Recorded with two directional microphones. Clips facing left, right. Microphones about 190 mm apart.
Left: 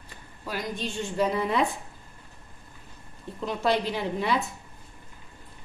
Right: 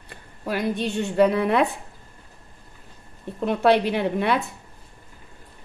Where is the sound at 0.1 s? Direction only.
60° right (ahead or behind).